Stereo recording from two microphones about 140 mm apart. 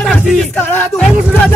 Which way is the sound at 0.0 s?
Centre (ahead or behind).